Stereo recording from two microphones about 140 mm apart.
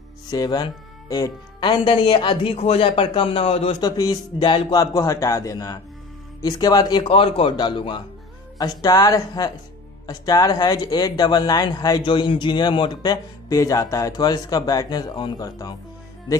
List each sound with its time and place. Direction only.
0.3 s speech: 30° left (ahead or behind)
3.8 s speech: 25° left (ahead or behind)
4.4 s speech: 35° left (ahead or behind)